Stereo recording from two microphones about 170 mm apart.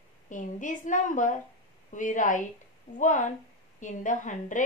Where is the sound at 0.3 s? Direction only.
50° left (ahead or behind).